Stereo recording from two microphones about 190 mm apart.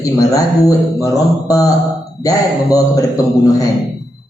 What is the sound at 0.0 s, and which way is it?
A man's voice, 20° left (ahead or behind).